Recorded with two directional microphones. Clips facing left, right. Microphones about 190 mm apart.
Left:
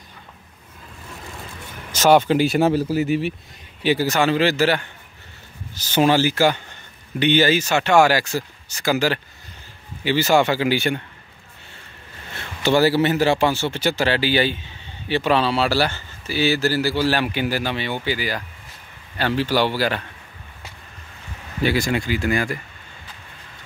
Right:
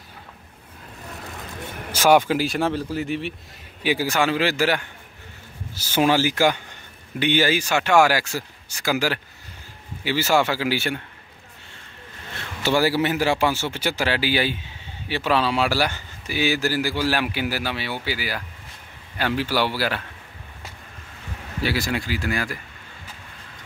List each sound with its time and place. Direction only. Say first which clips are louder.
1.9 s speech: left 2 dB; 10° right (ahead or behind)
3.8 s speech: left 3 dB; 10° right (ahead or behind)
12.6 s speech: left 4 dB; 10° right (ahead or behind)
21.6 s speech: left 4 dB; centre (ahead or behind)